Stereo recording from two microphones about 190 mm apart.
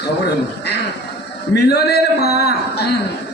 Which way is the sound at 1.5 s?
60° left (ahead or behind).